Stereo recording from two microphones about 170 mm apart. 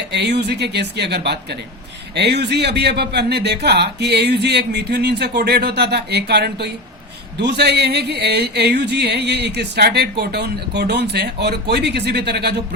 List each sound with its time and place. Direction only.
0.1 s music: 80° right